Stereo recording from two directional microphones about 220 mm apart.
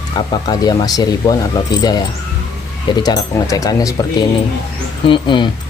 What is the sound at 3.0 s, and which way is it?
Speech, 15° left (ahead or behind).